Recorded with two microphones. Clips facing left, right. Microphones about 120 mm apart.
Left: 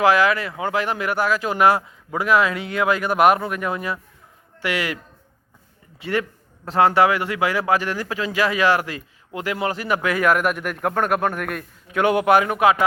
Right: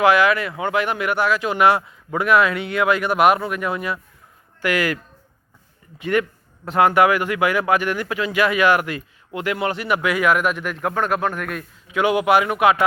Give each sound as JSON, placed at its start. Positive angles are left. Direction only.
{"t": 0.0, "sound": "speech", "side_deg": 35}
{"t": 6.0, "sound": "speech", "side_deg": 30}